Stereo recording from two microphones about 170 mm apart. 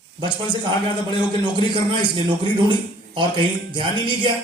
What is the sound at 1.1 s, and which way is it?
A man's voice, 25° right (ahead or behind).